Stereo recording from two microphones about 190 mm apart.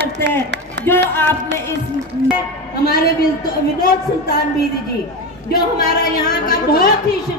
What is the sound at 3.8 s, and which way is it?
Speech, 60° left (ahead or behind).